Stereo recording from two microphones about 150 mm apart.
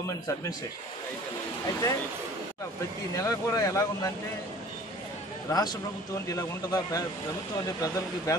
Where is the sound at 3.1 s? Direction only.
20° left (ahead or behind).